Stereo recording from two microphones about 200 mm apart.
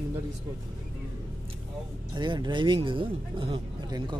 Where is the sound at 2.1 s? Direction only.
20° right (ahead or behind).